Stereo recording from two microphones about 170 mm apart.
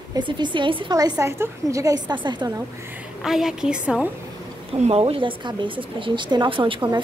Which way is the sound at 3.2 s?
Centre (ahead or behind).